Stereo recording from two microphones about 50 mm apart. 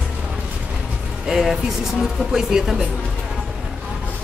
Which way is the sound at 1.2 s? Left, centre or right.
Centre.